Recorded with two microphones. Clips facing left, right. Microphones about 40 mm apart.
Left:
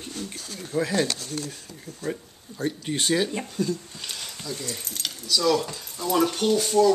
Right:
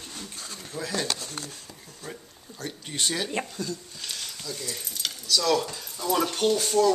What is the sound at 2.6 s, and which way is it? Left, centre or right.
Speech, centre.